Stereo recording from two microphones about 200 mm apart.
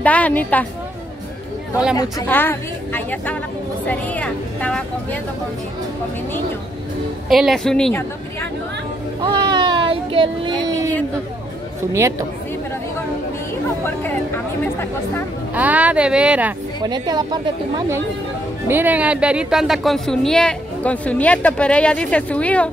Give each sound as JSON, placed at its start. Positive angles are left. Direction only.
{"t": 0.0, "sound": "speech", "side_deg": 5}
{"t": 2.0, "sound": "a woman's voice", "side_deg": 15}
{"t": 7.2, "sound": "a woman's voice", "side_deg": 0}
{"t": 9.2, "sound": "a sound", "side_deg": -20}
{"t": 11.9, "sound": "speech", "side_deg": -15}
{"t": 14.6, "sound": "speech", "side_deg": 10}
{"t": 15.5, "sound": "speech", "side_deg": -5}
{"t": 16.8, "sound": "a woman's voice", "side_deg": -20}